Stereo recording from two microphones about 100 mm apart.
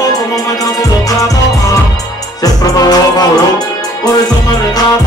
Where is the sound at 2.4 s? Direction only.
40° left (ahead or behind).